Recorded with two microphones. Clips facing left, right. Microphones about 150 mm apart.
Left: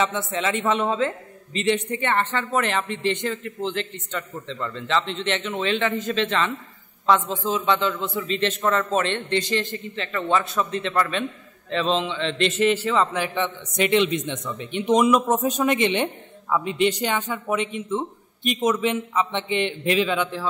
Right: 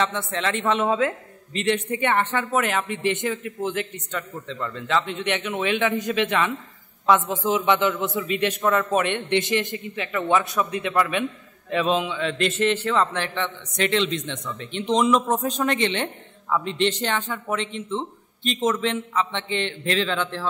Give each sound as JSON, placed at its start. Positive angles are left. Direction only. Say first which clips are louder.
{"t": 0.0, "sound": "a man's voice", "louder": "left 1 dB", "side_deg": 5}
{"t": 2.0, "sound": "a man's voice", "louder": "right 1 dB", "side_deg": -15}